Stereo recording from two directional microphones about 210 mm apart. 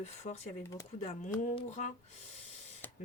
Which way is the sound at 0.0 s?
30° left (ahead or behind).